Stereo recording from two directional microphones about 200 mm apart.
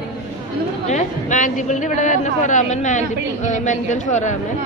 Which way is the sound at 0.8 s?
40° left (ahead or behind).